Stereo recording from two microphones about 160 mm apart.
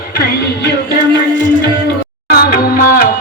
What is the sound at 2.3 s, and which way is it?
Music, 70° left (ahead or behind).